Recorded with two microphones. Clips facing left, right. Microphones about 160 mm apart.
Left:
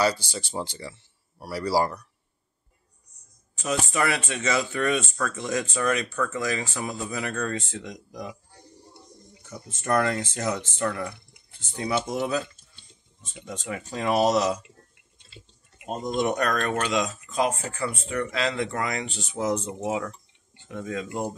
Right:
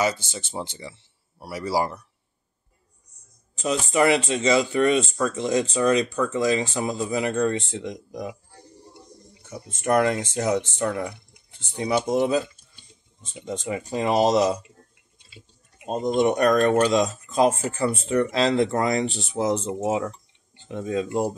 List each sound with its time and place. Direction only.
0.2 s speech: 20° right (ahead or behind)
3.9 s speech: 30° right (ahead or behind)
9.5 s speech: 15° right (ahead or behind)
15.8 s speech: 20° right (ahead or behind)
16.4 s speech: 35° right (ahead or behind)